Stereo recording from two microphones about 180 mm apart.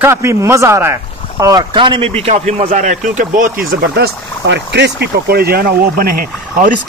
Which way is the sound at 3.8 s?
70° right (ahead or behind).